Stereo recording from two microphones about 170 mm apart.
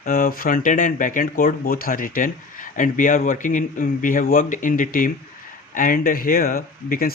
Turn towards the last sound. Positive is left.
turn(degrees=60)  # may be behind; listen again after turning